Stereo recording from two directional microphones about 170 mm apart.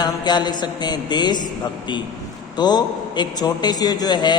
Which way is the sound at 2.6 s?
25° left (ahead or behind).